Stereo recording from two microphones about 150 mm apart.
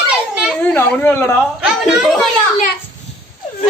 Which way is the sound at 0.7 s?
15° left (ahead or behind).